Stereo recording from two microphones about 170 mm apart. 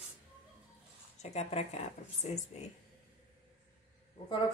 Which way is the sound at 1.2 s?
40° left (ahead or behind).